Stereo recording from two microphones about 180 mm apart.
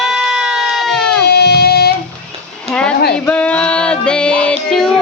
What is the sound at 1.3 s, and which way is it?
Music, 70° left (ahead or behind).